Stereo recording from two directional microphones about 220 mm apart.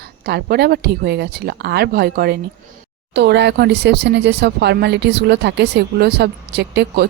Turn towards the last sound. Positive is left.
turn(degrees=-45)  # may be behind; listen again after turning